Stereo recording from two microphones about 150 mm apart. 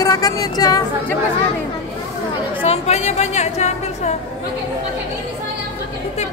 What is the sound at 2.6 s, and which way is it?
A woman's voice, 45° left (ahead or behind).